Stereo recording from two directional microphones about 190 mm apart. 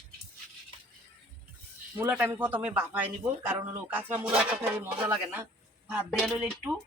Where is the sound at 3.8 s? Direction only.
5° right (ahead or behind).